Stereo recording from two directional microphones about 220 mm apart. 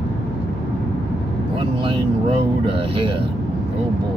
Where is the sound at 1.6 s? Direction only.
25° right (ahead or behind).